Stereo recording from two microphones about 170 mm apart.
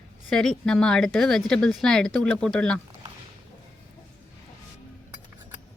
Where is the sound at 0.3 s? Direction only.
5° left (ahead or behind).